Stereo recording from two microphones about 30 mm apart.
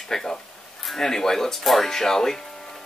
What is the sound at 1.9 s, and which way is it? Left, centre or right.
Speech, centre.